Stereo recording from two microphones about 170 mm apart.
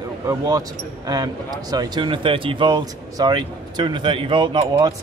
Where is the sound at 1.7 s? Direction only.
25° right (ahead or behind).